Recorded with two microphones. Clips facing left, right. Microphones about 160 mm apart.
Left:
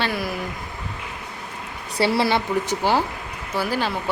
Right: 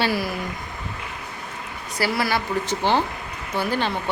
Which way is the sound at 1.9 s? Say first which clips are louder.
Left 4 dB; 30° left (ahead or behind).